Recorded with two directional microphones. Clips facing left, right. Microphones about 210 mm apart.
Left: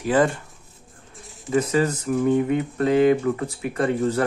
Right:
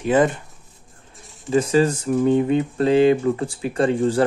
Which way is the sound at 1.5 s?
30° right (ahead or behind).